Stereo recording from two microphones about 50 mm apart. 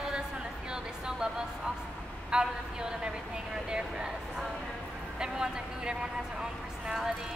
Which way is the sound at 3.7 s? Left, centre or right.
Centre.